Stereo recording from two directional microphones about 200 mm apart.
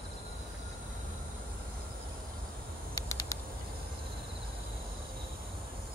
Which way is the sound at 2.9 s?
20° left (ahead or behind).